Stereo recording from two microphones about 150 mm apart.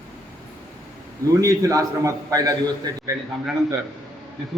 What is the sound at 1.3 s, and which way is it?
A man's voice, 20° right (ahead or behind).